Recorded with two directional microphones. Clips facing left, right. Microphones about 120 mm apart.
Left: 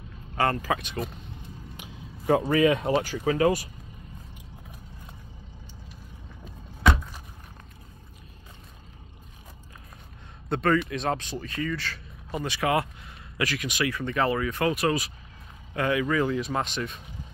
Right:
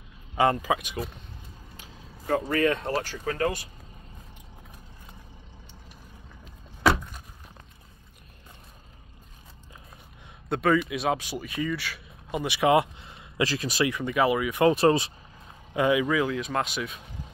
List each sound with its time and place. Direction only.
0.4 s speech: 15° right (ahead or behind)
1.8 s a sound: 10° left (ahead or behind)
2.5 s speech: 5° left (ahead or behind)
6.8 s a sound: 5° right (ahead or behind)
10.5 s speech: 5° right (ahead or behind); by 13.8 s 30° right (ahead or behind)
13.8 s speech: 15° right (ahead or behind)
14.7 s speech: 30° right (ahead or behind)
15.7 s speech: 15° right (ahead or behind)
16.2 s speech: centre (ahead or behind)